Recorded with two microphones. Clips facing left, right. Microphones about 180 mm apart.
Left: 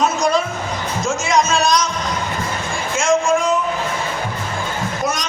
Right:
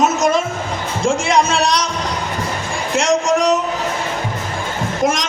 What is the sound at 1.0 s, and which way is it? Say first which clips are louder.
Music: right 3 dB; 30° right (ahead or behind).